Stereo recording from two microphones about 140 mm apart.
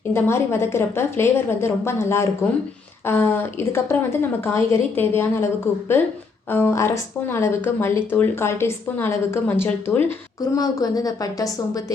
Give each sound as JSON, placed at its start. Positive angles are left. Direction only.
{"t": 0.1, "sound": "speech", "side_deg": 20}
{"t": 10.4, "sound": "a woman's voice", "side_deg": 25}